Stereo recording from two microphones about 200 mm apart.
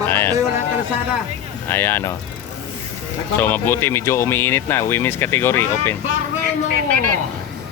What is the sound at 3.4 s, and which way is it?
Speech, 10° left (ahead or behind).